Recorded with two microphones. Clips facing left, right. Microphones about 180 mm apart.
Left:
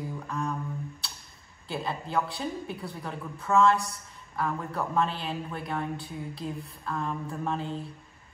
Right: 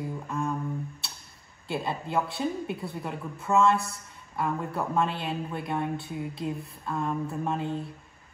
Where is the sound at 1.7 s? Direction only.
25° right (ahead or behind).